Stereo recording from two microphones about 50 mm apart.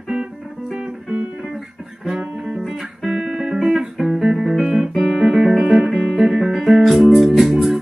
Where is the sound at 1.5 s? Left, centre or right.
Centre.